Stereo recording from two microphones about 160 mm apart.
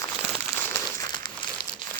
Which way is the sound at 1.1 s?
30° left (ahead or behind).